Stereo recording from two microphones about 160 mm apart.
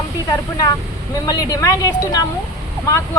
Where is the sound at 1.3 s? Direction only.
20° left (ahead or behind).